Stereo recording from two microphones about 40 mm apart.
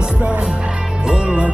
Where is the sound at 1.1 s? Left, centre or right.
Right.